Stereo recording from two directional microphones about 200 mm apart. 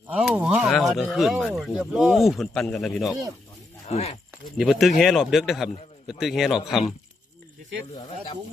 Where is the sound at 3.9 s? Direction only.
30° left (ahead or behind).